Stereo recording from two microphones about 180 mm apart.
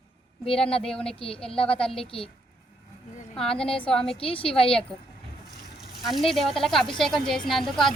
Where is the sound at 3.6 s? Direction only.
30° left (ahead or behind).